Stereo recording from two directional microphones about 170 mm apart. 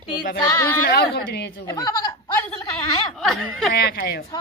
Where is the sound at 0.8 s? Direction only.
70° left (ahead or behind).